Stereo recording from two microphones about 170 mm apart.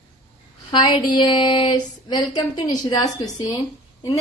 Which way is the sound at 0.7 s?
25° left (ahead or behind).